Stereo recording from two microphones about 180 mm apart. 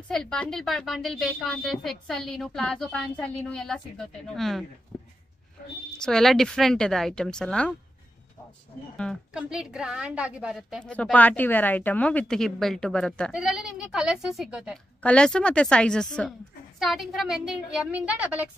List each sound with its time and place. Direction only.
0.1 s a woman's voice: 5° left (ahead or behind)
4.9 s a sound: 10° left (ahead or behind)
5.9 s a woman's voice: 5° left (ahead or behind)
8.9 s a woman's voice: 5° left (ahead or behind)